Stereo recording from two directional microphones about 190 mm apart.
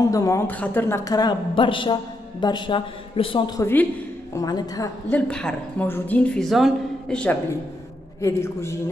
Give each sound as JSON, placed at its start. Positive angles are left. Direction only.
{"t": 0.0, "sound": "a woman's voice", "side_deg": 15}
{"t": 5.1, "sound": "a woman's voice", "side_deg": 5}